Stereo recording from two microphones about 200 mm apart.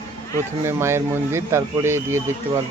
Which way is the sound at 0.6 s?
15° right (ahead or behind).